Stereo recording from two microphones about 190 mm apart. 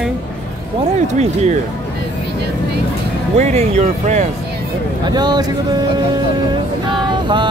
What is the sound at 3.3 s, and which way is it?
Speech, 35° right (ahead or behind).